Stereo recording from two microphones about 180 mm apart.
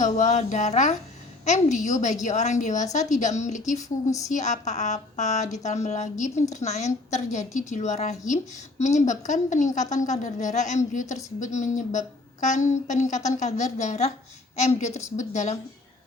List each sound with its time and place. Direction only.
0.0 s a woman's voice: 40° left (ahead or behind)